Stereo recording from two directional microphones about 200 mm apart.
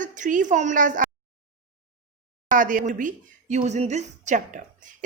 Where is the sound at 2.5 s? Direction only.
40° right (ahead or behind).